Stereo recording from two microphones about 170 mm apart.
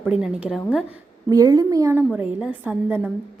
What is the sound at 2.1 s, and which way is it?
A woman's voice, 5° right (ahead or behind).